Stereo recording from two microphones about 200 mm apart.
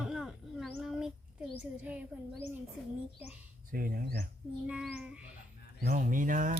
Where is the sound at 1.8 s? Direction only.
5° right (ahead or behind).